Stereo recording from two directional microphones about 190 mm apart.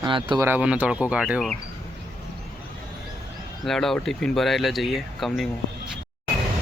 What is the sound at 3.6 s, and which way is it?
Speech, centre (ahead or behind).